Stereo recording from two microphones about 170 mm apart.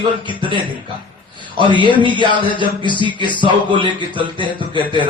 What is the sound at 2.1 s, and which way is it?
A man's voice, 30° right (ahead or behind).